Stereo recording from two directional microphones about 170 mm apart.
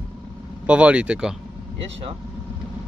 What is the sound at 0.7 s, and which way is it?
Speech, 5° right (ahead or behind).